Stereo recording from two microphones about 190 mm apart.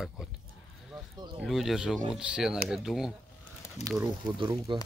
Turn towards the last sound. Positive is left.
turn(degrees=-25)  # may be behind; listen again after turning